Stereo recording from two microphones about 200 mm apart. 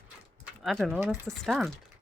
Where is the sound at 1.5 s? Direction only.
Centre (ahead or behind).